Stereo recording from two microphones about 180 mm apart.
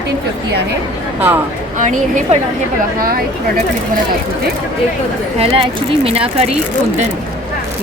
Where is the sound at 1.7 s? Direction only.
45° right (ahead or behind).